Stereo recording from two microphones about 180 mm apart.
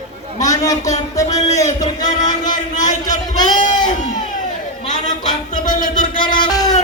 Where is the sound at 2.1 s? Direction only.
45° left (ahead or behind).